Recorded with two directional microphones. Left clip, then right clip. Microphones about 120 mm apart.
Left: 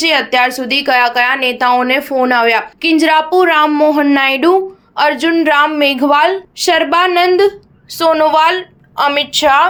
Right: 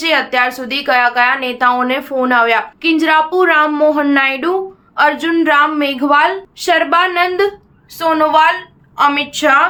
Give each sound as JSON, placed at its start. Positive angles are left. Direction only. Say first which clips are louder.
{"t": 0.0, "sound": "a woman's voice", "louder": "left 2 dB", "side_deg": 40}